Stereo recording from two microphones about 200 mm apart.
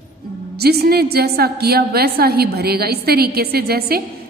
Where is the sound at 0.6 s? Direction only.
55° right (ahead or behind).